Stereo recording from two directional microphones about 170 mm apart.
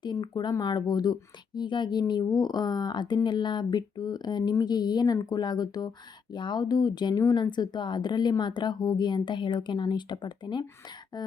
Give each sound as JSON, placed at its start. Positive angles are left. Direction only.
{"t": 0.0, "sound": "speech", "side_deg": 25}